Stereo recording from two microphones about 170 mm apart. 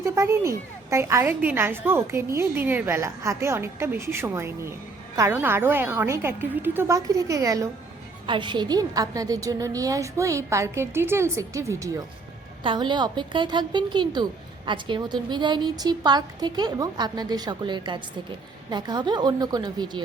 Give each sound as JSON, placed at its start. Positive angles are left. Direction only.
{"t": 0.0, "sound": "a woman's voice", "side_deg": -15}